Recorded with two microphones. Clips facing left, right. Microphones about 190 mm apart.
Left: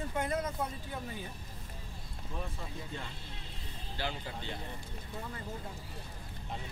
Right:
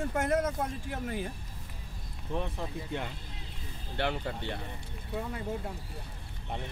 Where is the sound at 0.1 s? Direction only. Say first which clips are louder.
Right 5 dB; 85° right.